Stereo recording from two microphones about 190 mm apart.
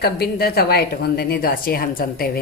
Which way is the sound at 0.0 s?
55° left (ahead or behind).